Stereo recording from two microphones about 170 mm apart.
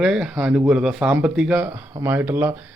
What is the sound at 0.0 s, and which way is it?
A man's voice, 5° right (ahead or behind).